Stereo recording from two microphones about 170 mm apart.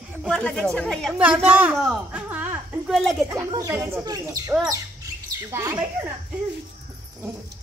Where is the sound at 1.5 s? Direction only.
10° right (ahead or behind).